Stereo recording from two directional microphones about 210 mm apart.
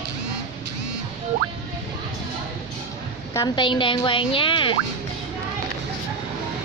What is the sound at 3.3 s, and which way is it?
Speech, 20° left (ahead or behind).